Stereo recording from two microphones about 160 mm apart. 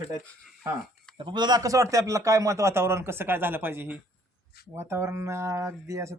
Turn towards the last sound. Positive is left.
turn(degrees=-20)  # may be behind; listen again after turning